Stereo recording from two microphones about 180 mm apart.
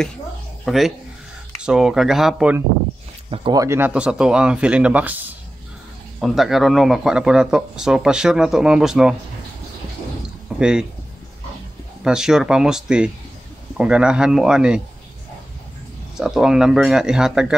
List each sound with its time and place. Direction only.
0.7 s speech: centre (ahead or behind)
3.3 s speech: 30° right (ahead or behind)
3.6 s a man's voice: 10° right (ahead or behind)
10.6 s speech: 5° right (ahead or behind)
12.0 s speech: 5° right (ahead or behind)
16.2 s speech: 5° right (ahead or behind)